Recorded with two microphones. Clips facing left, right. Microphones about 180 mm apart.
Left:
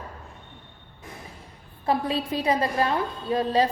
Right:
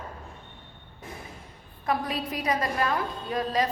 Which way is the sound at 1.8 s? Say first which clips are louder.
Left 4 dB; 30° left (ahead or behind).